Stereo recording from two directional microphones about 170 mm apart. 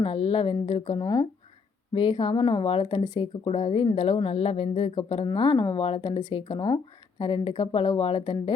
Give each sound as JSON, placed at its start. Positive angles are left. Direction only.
{"t": 0.0, "sound": "speech", "side_deg": 35}